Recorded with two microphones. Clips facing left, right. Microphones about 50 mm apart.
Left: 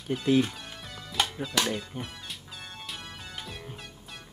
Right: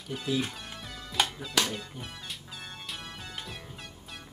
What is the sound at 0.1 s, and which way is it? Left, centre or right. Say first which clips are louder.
Speech: left 6 dB; centre.